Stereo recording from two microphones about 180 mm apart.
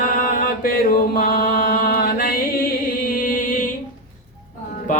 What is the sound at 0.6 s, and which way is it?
Mantra, 55° left (ahead or behind).